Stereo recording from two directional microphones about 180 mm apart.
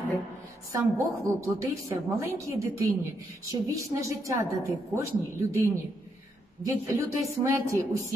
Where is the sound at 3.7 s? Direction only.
20° right (ahead or behind).